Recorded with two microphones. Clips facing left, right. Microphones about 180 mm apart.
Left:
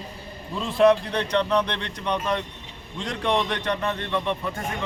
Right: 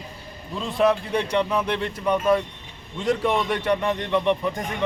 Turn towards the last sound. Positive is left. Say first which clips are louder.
# right 5 dB
turn(degrees=-15)  # may be behind; listen again after turning